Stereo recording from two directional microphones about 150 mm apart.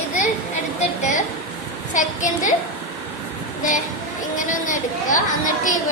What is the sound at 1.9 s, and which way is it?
Speech, 55° left (ahead or behind).